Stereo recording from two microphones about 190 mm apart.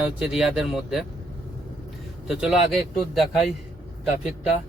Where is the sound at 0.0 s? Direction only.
5° right (ahead or behind).